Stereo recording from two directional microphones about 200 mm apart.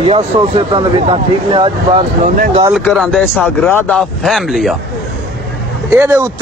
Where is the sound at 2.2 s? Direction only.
45° right (ahead or behind).